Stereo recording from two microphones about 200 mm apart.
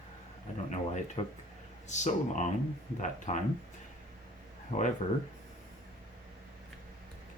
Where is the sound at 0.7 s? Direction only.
35° left (ahead or behind).